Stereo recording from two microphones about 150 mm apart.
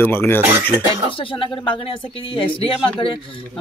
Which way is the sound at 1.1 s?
35° left (ahead or behind).